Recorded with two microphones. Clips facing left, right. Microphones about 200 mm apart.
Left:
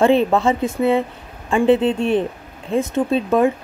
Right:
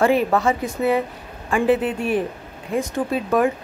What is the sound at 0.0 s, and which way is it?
Speech, 25° left (ahead or behind).